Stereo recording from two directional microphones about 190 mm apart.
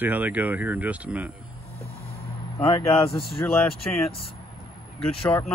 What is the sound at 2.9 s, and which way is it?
Speech, 30° left (ahead or behind).